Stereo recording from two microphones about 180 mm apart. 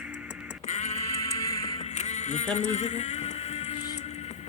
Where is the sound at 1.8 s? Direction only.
40° left (ahead or behind).